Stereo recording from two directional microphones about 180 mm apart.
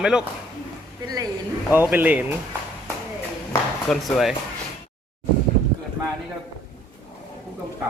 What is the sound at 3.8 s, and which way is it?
Speech, centre (ahead or behind).